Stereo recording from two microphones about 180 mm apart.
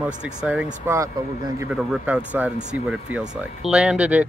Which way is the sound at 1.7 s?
5° right (ahead or behind).